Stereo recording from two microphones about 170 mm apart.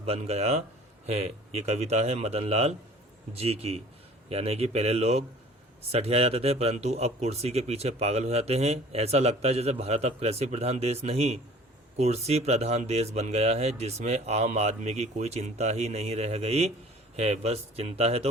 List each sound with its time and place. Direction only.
0.0 s a man's voice: 35° right (ahead or behind)